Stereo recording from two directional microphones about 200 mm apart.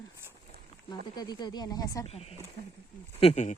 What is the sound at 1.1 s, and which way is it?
Speech, 20° left (ahead or behind).